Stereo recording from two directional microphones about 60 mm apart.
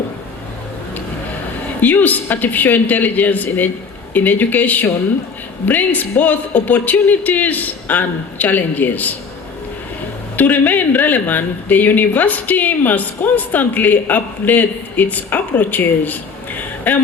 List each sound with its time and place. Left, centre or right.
1.8 s speech: left
10.3 s speech: left